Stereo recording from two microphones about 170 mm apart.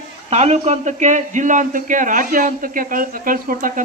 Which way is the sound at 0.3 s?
40° right (ahead or behind).